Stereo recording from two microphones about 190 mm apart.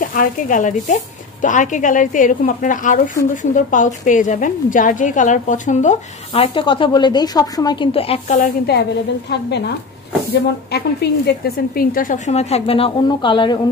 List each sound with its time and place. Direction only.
0.0 s a woman's voice: 45° left (ahead or behind); by 8.4 s 30° left (ahead or behind)
8.4 s a woman's voice: 60° left (ahead or behind)
10.7 s a woman's voice: 60° left (ahead or behind); by 13.6 s 25° left (ahead or behind)